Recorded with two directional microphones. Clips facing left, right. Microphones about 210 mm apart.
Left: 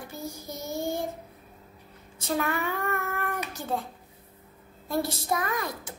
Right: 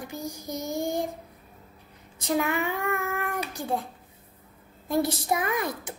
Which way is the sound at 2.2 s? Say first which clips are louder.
Right 2 dB; 15° right (ahead or behind).